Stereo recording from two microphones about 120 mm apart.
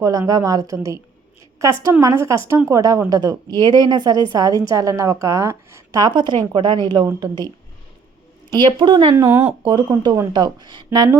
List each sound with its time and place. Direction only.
0.0 s a woman's voice: 30° right (ahead or behind)
8.5 s a woman's voice: 40° right (ahead or behind)
9.1 s a woman's voice: 20° right (ahead or behind)
9.6 s a woman's voice: 40° right (ahead or behind)